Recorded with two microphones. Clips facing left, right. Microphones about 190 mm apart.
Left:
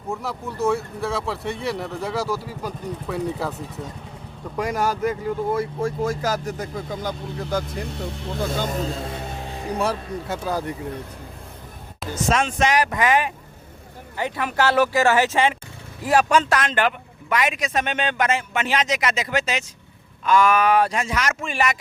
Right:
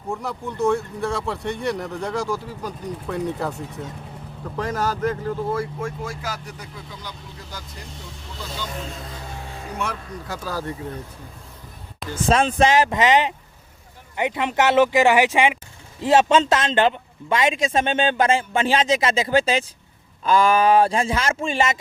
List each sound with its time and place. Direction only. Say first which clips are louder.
0.1 s speech: even; centre (ahead or behind)
4.5 s speech: left 1 dB; 10° left (ahead or behind)
5.8 s speech: left 6 dB; 40° left (ahead or behind)
9.0 s music: left 4 dB; 25° left (ahead or behind)
9.7 s speech: left 5 dB; 35° left (ahead or behind)
10.2 s speech: left 2 dB; 20° left (ahead or behind)
12.3 s a man's voice: right 3 dB; 30° right (ahead or behind); by 15.5 s 15° right (ahead or behind)
16.0 s a man's voice: right 2 dB; 25° right (ahead or behind)